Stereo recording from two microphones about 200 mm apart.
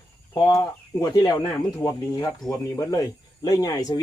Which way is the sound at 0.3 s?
20° left (ahead or behind).